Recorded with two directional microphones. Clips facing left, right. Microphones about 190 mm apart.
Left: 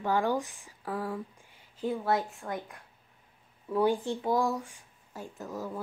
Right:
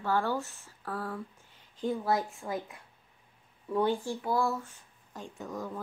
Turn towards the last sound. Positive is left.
turn(degrees=5)  # may be behind; listen again after turning